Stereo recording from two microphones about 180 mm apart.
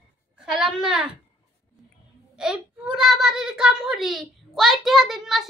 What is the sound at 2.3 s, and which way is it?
A child's voice, 5° right (ahead or behind).